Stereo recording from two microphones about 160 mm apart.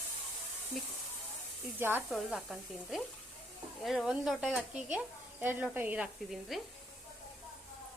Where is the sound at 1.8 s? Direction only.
10° right (ahead or behind).